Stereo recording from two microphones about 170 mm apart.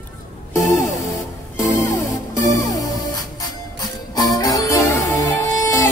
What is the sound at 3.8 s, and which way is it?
Music, 20° left (ahead or behind).